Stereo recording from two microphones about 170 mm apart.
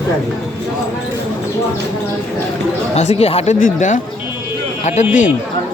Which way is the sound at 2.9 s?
40° left (ahead or behind).